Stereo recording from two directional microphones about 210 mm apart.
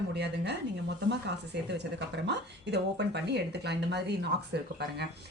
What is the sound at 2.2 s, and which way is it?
Speech, 55° right (ahead or behind).